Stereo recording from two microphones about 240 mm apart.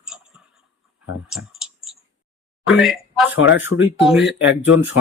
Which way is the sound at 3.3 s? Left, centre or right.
Left.